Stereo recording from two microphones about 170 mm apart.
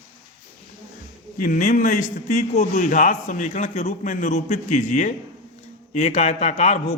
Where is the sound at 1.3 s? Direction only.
50° left (ahead or behind).